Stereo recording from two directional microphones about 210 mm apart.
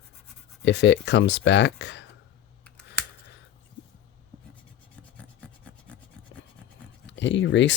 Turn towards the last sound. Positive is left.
turn(degrees=60)  # may be behind; listen again after turning